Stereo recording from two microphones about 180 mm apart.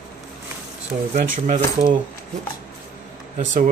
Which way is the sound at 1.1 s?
45° right (ahead or behind).